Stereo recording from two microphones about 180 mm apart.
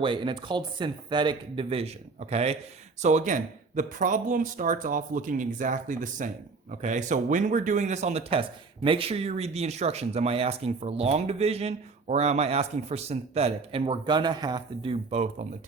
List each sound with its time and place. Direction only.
0.0 s speech: 25° right (ahead or behind)